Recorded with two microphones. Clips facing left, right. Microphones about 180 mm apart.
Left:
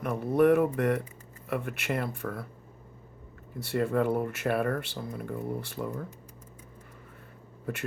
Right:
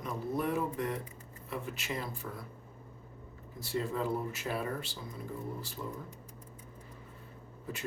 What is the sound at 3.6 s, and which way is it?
Speech, 65° left (ahead or behind).